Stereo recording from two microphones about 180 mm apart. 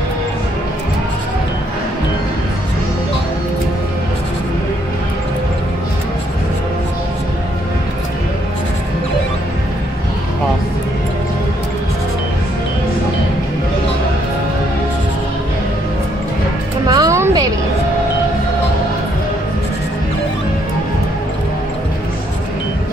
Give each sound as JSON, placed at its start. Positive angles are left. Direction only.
{"t": 16.8, "sound": "music", "side_deg": -20}